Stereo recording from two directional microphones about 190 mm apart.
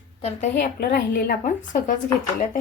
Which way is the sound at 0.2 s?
35° left (ahead or behind).